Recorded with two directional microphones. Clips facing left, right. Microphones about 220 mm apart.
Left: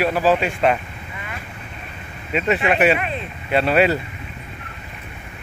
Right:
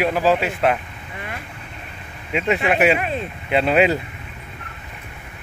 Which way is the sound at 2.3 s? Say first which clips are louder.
Even; 10° right (ahead or behind).